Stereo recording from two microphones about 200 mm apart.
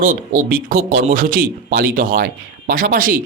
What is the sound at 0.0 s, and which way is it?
A man's voice, 45° right (ahead or behind).